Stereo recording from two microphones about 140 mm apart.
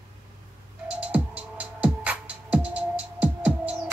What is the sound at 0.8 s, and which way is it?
Music, 10° right (ahead or behind).